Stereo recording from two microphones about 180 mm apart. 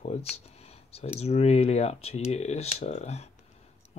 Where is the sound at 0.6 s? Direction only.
35° left (ahead or behind).